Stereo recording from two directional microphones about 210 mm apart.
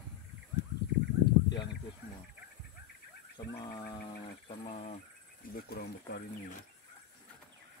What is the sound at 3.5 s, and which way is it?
Speech, 20° left (ahead or behind).